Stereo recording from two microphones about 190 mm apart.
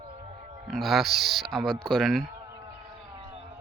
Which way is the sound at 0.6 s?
Centre (ahead or behind).